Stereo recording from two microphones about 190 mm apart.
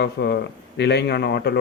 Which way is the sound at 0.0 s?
60° left (ahead or behind).